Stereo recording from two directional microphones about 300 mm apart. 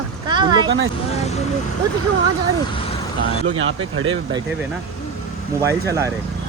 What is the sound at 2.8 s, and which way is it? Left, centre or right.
Vehicle, centre.